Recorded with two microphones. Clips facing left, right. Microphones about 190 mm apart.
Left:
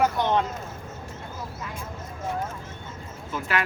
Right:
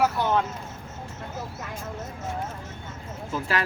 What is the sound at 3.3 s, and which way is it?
Speech, 35° right (ahead or behind).